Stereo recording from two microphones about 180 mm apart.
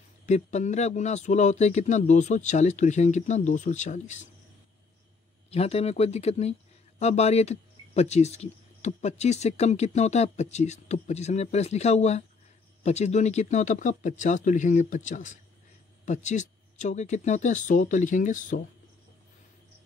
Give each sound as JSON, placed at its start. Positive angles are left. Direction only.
{"t": 0.3, "sound": "speech", "side_deg": 40}
{"t": 5.5, "sound": "speech", "side_deg": 35}